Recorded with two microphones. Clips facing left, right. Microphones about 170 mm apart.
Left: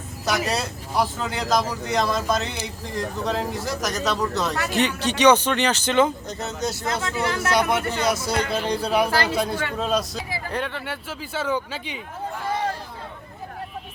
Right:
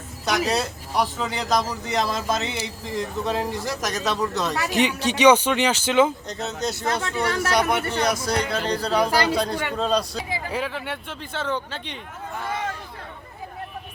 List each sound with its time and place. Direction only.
0.3 s speech: centre (ahead or behind)
4.7 s speech: 10° right (ahead or behind); by 9.0 s 10° left (ahead or behind)
9.0 s speech: 15° right (ahead or behind)
9.3 s speech: 5° left (ahead or behind)